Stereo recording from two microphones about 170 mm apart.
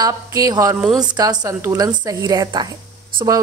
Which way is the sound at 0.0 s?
20° right (ahead or behind).